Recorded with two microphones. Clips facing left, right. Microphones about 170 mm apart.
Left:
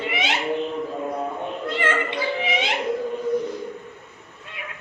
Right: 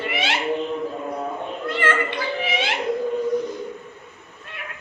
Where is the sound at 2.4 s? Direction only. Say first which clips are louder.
Even; 15° left (ahead or behind).